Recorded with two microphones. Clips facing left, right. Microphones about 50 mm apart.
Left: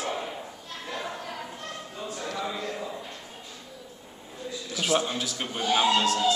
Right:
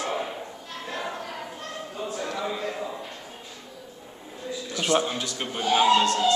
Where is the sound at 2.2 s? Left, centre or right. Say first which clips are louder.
Right 2 dB; centre.